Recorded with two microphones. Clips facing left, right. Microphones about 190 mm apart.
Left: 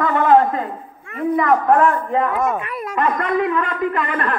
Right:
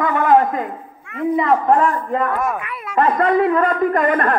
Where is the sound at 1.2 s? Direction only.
25° right (ahead or behind).